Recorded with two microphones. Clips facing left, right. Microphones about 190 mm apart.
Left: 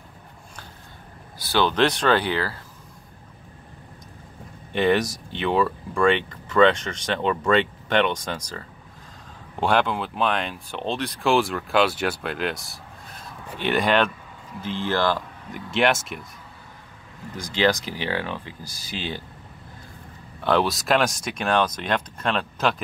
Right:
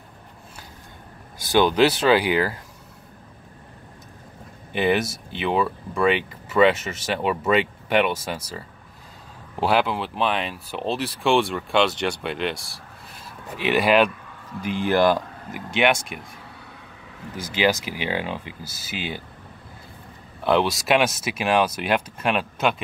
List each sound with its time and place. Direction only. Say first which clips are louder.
1.4 s speech: right 3 dB; 15° right (ahead or behind)
4.7 s speech: left 1 dB; 5° right (ahead or behind)
9.6 s speech: even; 5° right (ahead or behind)
15.5 s speech: right 1 dB; centre (ahead or behind)
17.4 s speech: even; 5° right (ahead or behind)
20.3 s speech: right 1 dB; centre (ahead or behind)